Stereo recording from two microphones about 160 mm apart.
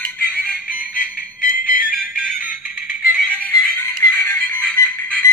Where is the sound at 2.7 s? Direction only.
5° left (ahead or behind).